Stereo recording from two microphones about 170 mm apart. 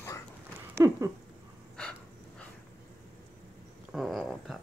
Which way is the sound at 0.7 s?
20° right (ahead or behind).